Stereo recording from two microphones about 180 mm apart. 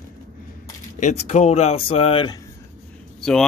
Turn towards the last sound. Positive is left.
turn(degrees=5)  # may be behind; listen again after turning